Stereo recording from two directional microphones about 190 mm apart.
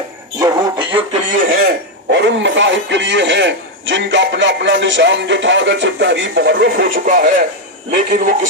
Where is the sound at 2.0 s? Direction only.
70° right (ahead or behind).